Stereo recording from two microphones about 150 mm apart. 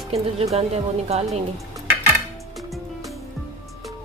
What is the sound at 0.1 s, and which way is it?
Speech, 45° right (ahead or behind).